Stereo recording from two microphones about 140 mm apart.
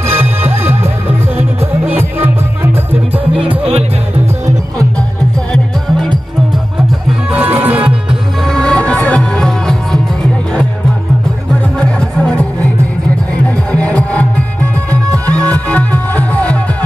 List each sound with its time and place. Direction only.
2.0 s music: 15° right (ahead or behind)
5.5 s music: 5° left (ahead or behind)
7.1 s music: 10° right (ahead or behind)
8.5 s music: 5° left (ahead or behind)
11.8 s music: 5° left (ahead or behind)